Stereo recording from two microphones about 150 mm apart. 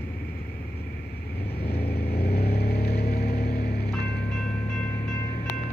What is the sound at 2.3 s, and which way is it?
Vehicle, 90° left.